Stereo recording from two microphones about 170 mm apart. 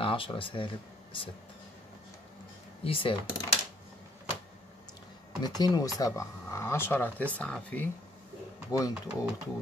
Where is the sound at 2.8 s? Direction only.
30° left (ahead or behind).